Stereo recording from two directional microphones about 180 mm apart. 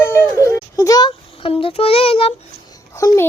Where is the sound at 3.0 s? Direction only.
20° left (ahead or behind).